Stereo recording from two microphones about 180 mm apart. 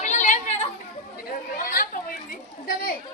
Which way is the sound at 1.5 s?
50° left (ahead or behind).